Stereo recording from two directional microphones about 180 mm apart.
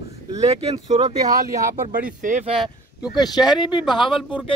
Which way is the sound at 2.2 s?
45° right (ahead or behind).